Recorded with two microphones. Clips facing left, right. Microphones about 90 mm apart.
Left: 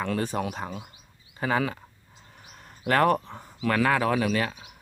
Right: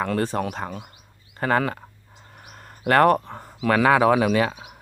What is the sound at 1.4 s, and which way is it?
Speech, 60° right (ahead or behind).